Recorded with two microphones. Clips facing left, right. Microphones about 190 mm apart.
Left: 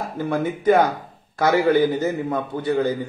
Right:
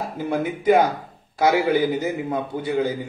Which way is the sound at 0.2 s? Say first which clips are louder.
Left 2 dB; 10° right (ahead or behind).